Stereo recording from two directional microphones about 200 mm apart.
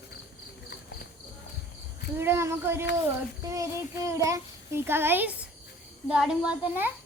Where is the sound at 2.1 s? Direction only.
10° right (ahead or behind).